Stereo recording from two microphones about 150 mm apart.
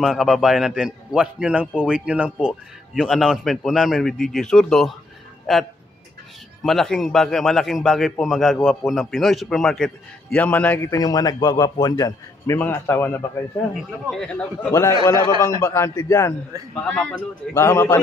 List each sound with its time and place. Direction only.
0.0 s a man's voice: centre (ahead or behind)
10.9 s a man's voice: 25° left (ahead or behind)
14.1 s speech: 5° left (ahead or behind)
14.7 s a man's voice: 20° left (ahead or behind)
16.8 s speech: 5° left (ahead or behind)
17.6 s speech: 20° left (ahead or behind)